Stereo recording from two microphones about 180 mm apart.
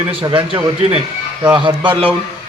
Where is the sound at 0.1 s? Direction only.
30° right (ahead or behind).